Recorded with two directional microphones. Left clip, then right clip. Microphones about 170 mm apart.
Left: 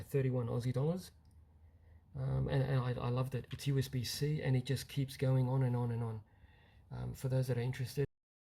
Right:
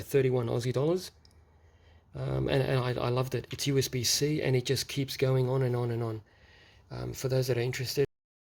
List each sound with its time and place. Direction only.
0.0 s speech: 60° right (ahead or behind)
2.1 s speech: 55° right (ahead or behind)